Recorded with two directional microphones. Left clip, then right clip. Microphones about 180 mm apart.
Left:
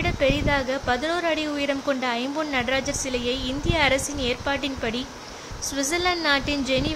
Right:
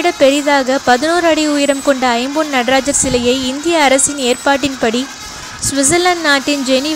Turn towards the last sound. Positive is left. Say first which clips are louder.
# right 10 dB
turn(degrees=-25)  # may be behind; listen again after turning